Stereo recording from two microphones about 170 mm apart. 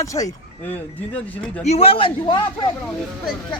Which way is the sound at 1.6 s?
40° left (ahead or behind).